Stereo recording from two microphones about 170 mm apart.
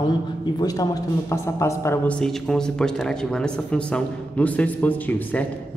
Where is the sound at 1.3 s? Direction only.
15° left (ahead or behind).